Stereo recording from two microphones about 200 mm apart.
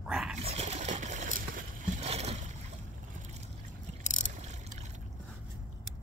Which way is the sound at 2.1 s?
30° right (ahead or behind).